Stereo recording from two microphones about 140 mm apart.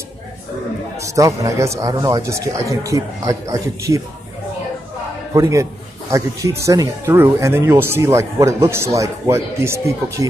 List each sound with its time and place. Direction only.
0.9 s a man's voice: 20° right (ahead or behind)
5.3 s a man's voice: 20° right (ahead or behind)